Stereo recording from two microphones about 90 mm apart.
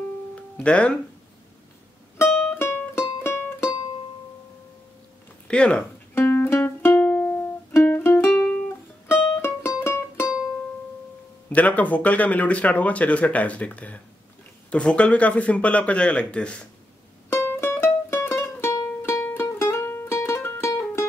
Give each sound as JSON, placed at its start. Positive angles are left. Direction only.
{"t": 0.6, "sound": "speech", "side_deg": 15}
{"t": 2.2, "sound": "music", "side_deg": 5}
{"t": 2.5, "sound": "music", "side_deg": 25}
{"t": 5.5, "sound": "speech", "side_deg": 10}
{"t": 6.1, "sound": "music", "side_deg": 25}
{"t": 9.4, "sound": "music", "side_deg": 30}
{"t": 11.4, "sound": "speech", "side_deg": 15}
{"t": 17.3, "sound": "music", "side_deg": 25}